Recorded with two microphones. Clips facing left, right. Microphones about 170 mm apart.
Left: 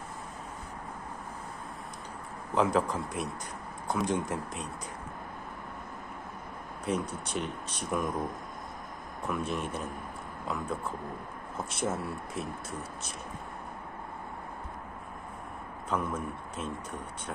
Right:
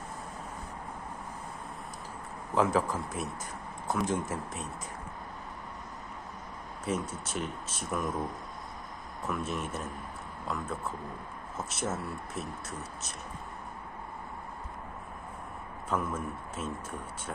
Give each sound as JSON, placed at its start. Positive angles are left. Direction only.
{"t": 2.5, "sound": "speech", "side_deg": 0}
{"t": 6.9, "sound": "speech", "side_deg": -5}
{"t": 9.3, "sound": "speech", "side_deg": 0}
{"t": 11.5, "sound": "speech", "side_deg": 0}
{"t": 15.9, "sound": "speech", "side_deg": -5}